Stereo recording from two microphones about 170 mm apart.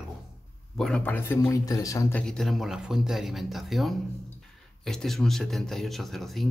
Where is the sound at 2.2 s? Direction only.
5° left (ahead or behind).